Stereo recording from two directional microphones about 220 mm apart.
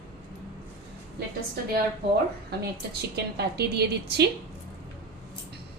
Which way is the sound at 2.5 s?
45° right (ahead or behind).